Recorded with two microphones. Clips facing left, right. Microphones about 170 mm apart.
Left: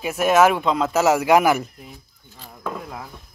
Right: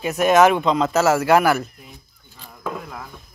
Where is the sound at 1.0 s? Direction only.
15° left (ahead or behind).